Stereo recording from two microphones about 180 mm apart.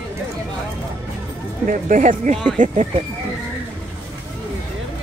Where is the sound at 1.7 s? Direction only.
45° right (ahead or behind).